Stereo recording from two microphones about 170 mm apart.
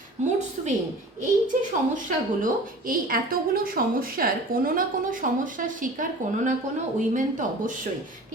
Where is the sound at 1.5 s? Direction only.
50° right (ahead or behind).